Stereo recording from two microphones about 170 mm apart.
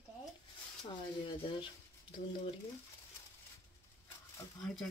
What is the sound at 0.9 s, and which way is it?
Speech, 30° left (ahead or behind).